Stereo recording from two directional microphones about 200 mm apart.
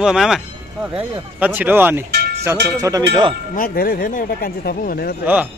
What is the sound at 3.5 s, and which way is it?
Speech, 45° left (ahead or behind).